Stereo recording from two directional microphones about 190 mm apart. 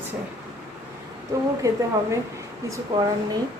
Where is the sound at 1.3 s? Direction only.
15° right (ahead or behind).